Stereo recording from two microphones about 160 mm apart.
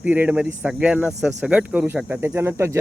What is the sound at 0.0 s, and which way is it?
Speech, 10° right (ahead or behind).